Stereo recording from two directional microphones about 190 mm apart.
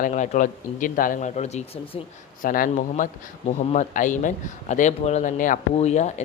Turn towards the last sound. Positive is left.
turn(degrees=35)  # may be behind; listen again after turning